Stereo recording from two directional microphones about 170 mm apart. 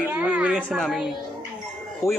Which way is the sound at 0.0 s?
5° right (ahead or behind).